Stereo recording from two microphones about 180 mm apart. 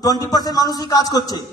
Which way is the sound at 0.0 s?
20° left (ahead or behind).